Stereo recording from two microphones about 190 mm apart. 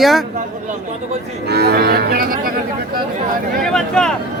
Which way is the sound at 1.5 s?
60° right (ahead or behind).